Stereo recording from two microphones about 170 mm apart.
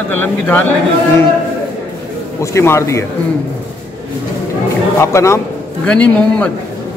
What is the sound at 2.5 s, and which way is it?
Speech, 15° left (ahead or behind).